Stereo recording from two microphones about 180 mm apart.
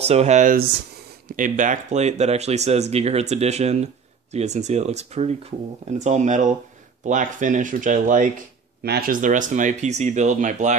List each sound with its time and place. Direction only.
0.0 s speech: 35° right (ahead or behind)
8.8 s speech: 60° right (ahead or behind); by 10.8 s 40° right (ahead or behind)